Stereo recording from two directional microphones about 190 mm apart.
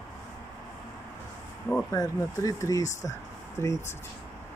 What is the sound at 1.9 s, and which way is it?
Speech, 20° left (ahead or behind).